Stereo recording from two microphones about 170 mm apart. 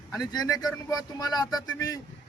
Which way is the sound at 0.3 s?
20° left (ahead or behind).